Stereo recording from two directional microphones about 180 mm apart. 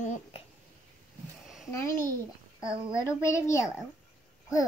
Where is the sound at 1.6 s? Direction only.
15° left (ahead or behind).